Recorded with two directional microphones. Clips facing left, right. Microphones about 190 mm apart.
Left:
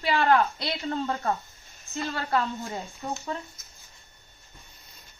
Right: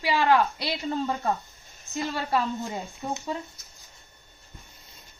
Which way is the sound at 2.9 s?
15° right (ahead or behind).